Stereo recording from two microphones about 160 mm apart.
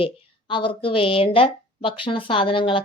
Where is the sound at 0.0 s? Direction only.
30° left (ahead or behind).